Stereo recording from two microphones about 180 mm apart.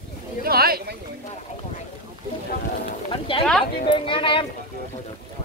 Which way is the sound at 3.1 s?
30° left (ahead or behind).